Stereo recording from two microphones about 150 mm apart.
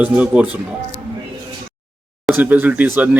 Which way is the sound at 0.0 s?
10° right (ahead or behind).